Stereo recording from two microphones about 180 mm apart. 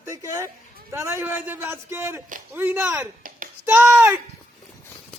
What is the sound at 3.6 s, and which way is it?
Speech, 15° right (ahead or behind).